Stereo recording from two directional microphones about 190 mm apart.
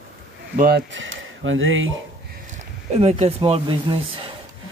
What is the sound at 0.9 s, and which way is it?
Speech, 85° right.